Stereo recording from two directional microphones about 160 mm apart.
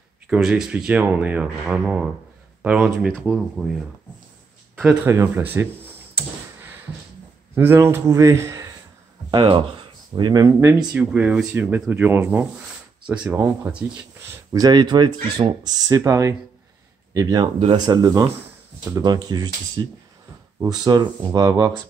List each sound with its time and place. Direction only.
0.3 s speech: 5° right (ahead or behind)
5.0 s speech: 15° right (ahead or behind)
7.5 s speech: 15° right (ahead or behind)
9.3 s speech: 30° right (ahead or behind)
10.9 s speech: 5° right (ahead or behind)
14.5 s speech: 25° right (ahead or behind)